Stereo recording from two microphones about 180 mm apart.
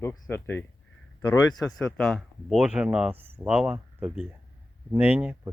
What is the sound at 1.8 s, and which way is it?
Speech, 5° left (ahead or behind).